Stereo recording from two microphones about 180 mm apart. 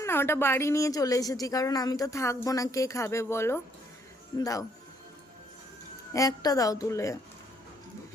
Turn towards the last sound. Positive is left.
turn(degrees=15)  # may be behind; listen again after turning